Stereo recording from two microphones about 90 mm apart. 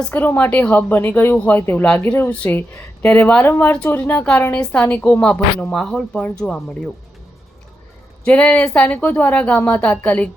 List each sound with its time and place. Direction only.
0.1 s a woman's voice: 20° left (ahead or behind)
8.3 s speech: 15° left (ahead or behind)